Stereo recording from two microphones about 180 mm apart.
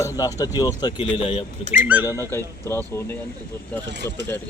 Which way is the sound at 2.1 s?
15° left (ahead or behind).